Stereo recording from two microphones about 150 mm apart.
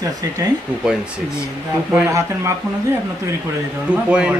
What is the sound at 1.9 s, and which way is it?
Speech, 20° right (ahead or behind).